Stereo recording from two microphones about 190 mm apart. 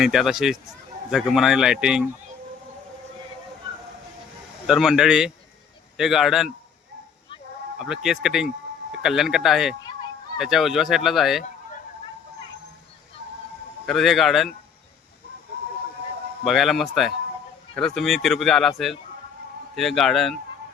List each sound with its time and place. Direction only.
0.0 s speech: centre (ahead or behind)
4.6 s speech: 5° right (ahead or behind)
7.8 s speech: centre (ahead or behind)
13.8 s speech: centre (ahead or behind)
16.4 s speech: centre (ahead or behind)
19.7 s speech: centre (ahead or behind)